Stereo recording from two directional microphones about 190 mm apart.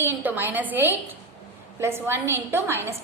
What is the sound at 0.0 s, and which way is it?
A woman's voice, 10° right (ahead or behind).